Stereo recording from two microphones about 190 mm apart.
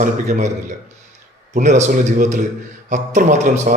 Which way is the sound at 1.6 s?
40° right (ahead or behind).